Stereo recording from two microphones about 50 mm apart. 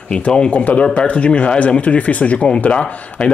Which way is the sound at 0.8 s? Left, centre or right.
Left.